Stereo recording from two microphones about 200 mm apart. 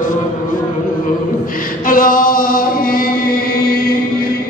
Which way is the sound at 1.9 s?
45° left (ahead or behind).